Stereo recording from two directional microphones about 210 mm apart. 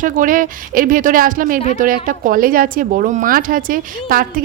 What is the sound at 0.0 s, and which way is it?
A woman's voice, 40° right (ahead or behind).